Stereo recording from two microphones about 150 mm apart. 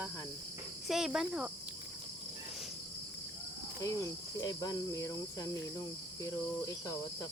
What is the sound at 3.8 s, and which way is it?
Cricket, 20° left (ahead or behind).